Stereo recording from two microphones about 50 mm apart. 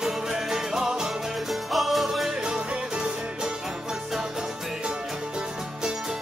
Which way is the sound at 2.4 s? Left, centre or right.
Centre.